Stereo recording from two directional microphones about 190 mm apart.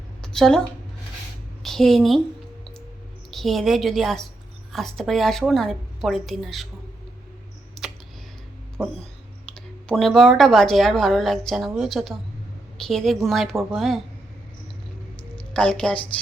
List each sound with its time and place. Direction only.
0.2 s a sound: 5° left (ahead or behind)
1.6 s a woman's voice: centre (ahead or behind)
3.3 s speech: centre (ahead or behind)
9.6 s speech: centre (ahead or behind)
15.5 s speech: 5° left (ahead or behind)